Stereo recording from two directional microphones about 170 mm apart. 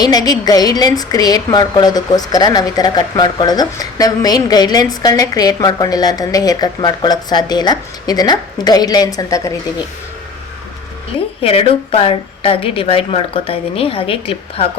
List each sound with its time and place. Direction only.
0.0 s a woman's voice: 25° left (ahead or behind)
11.4 s a woman's voice: 35° left (ahead or behind)